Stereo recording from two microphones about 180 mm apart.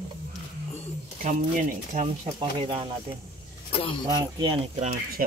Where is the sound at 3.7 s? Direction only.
30° left (ahead or behind).